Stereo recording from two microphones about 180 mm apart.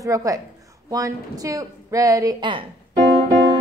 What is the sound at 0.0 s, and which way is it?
A woman's voice, 20° right (ahead or behind).